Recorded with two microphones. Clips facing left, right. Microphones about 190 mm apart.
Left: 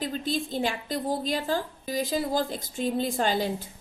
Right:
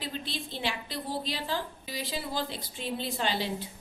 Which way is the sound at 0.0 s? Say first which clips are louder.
Left 8 dB; 45° left (ahead or behind).